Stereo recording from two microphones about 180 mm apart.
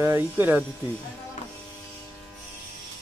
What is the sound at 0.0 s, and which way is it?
Speech, 10° right (ahead or behind).